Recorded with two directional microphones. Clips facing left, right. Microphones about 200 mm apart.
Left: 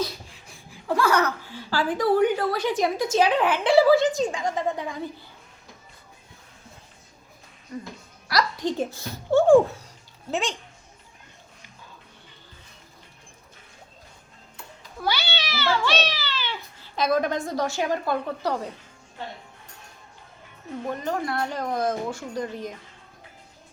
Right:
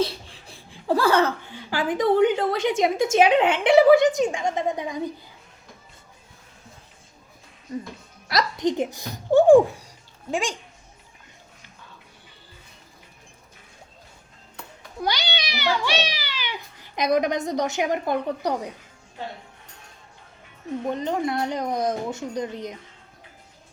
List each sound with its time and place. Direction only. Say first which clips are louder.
0.0 s speech: right 4 dB; 30° right (ahead or behind)
8.3 s speech: right 2 dB; 20° right (ahead or behind)
15.0 s speech: right 1 dB; 15° right (ahead or behind)
20.8 s speech: right 3 dB; 20° right (ahead or behind)